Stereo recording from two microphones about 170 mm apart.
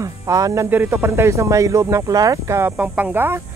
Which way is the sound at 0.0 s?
20° right (ahead or behind).